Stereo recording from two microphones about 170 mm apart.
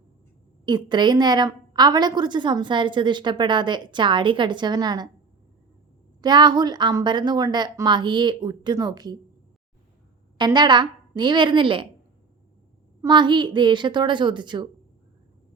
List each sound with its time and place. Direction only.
0.6 s a woman's voice: 25° right (ahead or behind)
6.2 s a woman's voice: 25° right (ahead or behind)
10.3 s a woman's voice: 25° right (ahead or behind)
13.0 s a woman's voice: 25° right (ahead or behind)